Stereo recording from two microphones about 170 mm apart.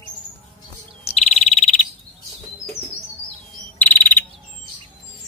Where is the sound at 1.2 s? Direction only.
40° left (ahead or behind).